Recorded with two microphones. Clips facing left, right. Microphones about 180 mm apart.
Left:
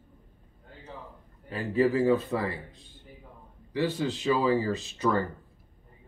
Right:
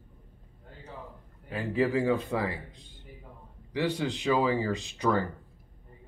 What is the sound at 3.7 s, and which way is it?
Speech, 15° right (ahead or behind).